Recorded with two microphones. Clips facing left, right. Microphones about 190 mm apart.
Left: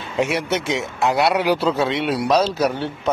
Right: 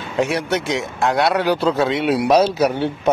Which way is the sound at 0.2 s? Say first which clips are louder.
Right 1 dB; 5° left (ahead or behind).